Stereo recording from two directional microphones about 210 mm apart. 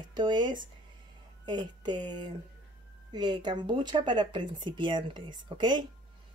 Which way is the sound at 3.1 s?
20° right (ahead or behind).